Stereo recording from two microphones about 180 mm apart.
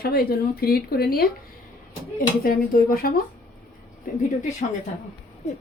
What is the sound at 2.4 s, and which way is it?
Speech, 55° left (ahead or behind).